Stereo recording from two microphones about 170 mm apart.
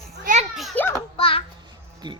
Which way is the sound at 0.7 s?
15° left (ahead or behind).